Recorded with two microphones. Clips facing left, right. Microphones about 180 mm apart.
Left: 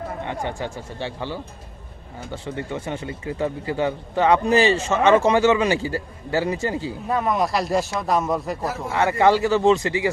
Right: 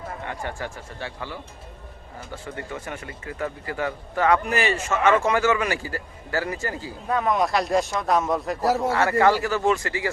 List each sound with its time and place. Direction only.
0.3 s speech: 20° left (ahead or behind)
7.1 s speech: centre (ahead or behind)
8.9 s speech: 20° left (ahead or behind)